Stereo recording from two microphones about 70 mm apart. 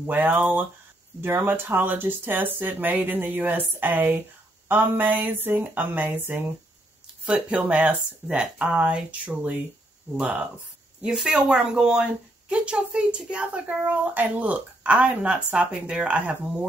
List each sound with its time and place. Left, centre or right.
0.0 s speech: right
7.2 s speech: centre
11.0 s speech: centre